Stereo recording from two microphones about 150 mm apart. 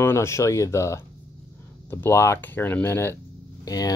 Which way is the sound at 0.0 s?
15° left (ahead or behind).